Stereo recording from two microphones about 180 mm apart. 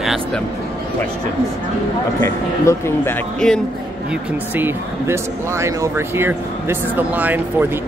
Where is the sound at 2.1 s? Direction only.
15° left (ahead or behind).